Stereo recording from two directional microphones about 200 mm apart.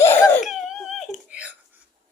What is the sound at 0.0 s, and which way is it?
Laughter, 10° left (ahead or behind).